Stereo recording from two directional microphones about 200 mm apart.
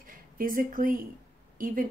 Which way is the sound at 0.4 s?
45° right (ahead or behind).